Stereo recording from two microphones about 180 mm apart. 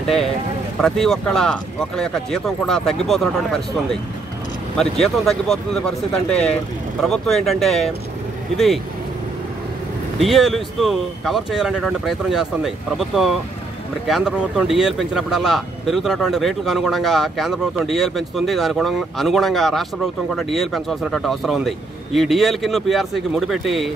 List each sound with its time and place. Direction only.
0.7 s speech: centre (ahead or behind)
10.1 s speech: centre (ahead or behind)